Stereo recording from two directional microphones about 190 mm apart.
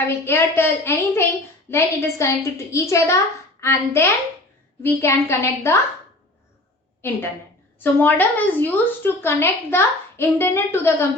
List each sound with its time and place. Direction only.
0.3 s a woman's voice: 10° left (ahead or behind)
7.8 s a woman's voice: 10° left (ahead or behind)